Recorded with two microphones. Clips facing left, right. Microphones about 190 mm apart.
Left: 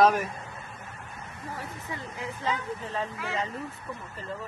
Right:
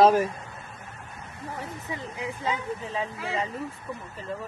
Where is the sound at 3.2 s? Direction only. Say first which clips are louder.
Right 2 dB; 35° right (ahead or behind).